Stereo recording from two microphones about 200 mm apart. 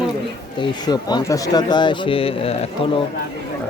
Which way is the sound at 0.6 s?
20° left (ahead or behind).